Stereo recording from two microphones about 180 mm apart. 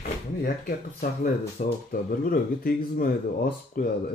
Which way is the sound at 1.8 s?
50° left (ahead or behind).